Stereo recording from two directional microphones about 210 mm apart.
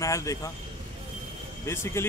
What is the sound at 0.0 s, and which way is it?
Speech, 15° left (ahead or behind).